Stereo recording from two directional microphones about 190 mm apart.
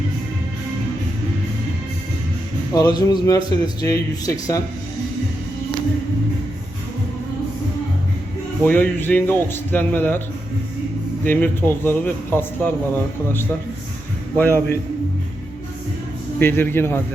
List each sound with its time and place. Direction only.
2.7 s a man's voice: 20° left (ahead or behind)
8.6 s speech: 10° left (ahead or behind)
11.3 s speech: 10° left (ahead or behind)
16.4 s speech: 10° left (ahead or behind)